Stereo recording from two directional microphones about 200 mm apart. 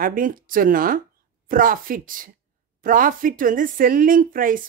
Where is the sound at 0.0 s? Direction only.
45° right (ahead or behind).